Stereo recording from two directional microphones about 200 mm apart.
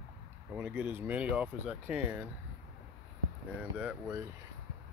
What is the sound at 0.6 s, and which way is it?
Speech, 10° right (ahead or behind).